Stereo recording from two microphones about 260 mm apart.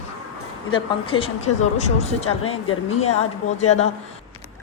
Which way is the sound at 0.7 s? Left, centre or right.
Centre.